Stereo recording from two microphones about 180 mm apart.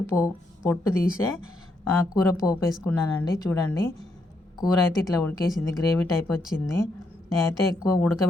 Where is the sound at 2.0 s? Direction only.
20° left (ahead or behind).